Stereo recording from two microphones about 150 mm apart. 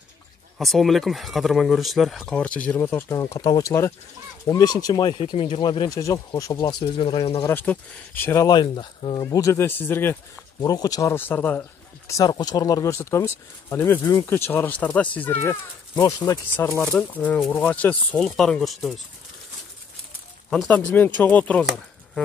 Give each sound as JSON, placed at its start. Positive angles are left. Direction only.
{"t": 0.6, "sound": "speech", "side_deg": 0}
{"t": 5.2, "sound": "speech", "side_deg": 40}
{"t": 7.4, "sound": "speech", "side_deg": 10}
{"t": 10.6, "sound": "speech", "side_deg": 25}
{"t": 12.1, "sound": "speech", "side_deg": 25}
{"t": 16.0, "sound": "speech", "side_deg": 25}
{"t": 16.5, "sound": "speech", "side_deg": 10}
{"t": 20.4, "sound": "speech", "side_deg": 0}
{"t": 21.2, "sound": "speech", "side_deg": 10}